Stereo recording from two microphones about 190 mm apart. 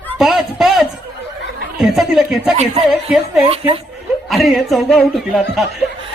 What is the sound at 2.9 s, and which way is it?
Speech, centre (ahead or behind).